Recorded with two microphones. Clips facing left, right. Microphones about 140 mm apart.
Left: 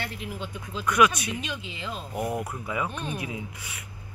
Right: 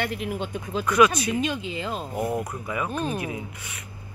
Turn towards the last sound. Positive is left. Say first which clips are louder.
# right 6 dB
turn(degrees=-35)  # may be behind; listen again after turning